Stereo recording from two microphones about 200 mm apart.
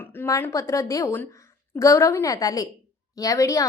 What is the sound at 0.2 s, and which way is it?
A woman's voice, 10° left (ahead or behind).